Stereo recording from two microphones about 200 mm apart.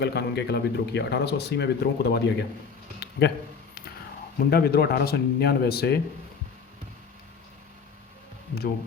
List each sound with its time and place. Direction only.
0.0 s speech: 55° left (ahead or behind)
3.0 s a sound: 55° left (ahead or behind)
4.4 s speech: 50° left (ahead or behind)